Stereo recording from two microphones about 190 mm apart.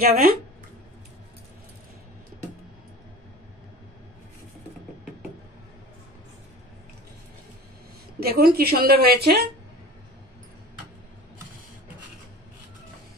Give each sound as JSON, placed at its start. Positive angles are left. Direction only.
{"t": 0.0, "sound": "a woman's voice", "side_deg": -50}
{"t": 8.2, "sound": "a woman's voice", "side_deg": -50}